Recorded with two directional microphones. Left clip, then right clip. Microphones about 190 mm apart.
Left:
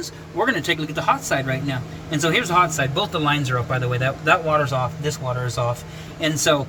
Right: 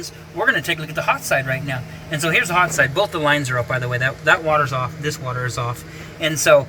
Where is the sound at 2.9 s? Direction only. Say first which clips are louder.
Right 3 dB; 10° right (ahead or behind).